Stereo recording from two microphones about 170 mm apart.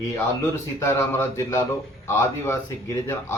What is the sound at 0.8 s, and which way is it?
Speech, 15° left (ahead or behind).